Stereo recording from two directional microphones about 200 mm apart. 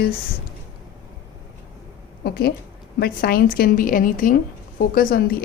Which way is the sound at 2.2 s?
50° left (ahead or behind).